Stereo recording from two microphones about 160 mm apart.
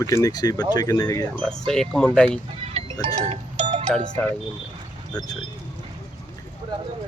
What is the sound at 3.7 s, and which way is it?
Doorbell, 50° right (ahead or behind).